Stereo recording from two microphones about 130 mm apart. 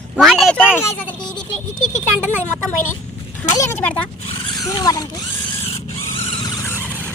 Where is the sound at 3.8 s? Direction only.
10° left (ahead or behind).